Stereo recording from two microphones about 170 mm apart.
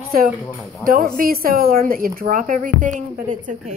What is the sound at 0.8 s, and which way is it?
Speech, 60° right (ahead or behind).